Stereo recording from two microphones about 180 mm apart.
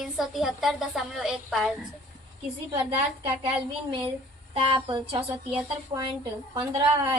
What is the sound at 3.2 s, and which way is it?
A woman's voice, 30° right (ahead or behind).